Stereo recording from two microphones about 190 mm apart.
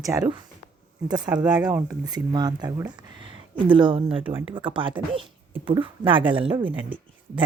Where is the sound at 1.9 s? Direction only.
20° right (ahead or behind).